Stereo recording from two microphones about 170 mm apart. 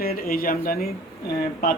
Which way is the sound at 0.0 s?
60° left (ahead or behind).